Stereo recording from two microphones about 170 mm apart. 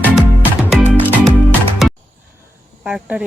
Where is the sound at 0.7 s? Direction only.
5° right (ahead or behind).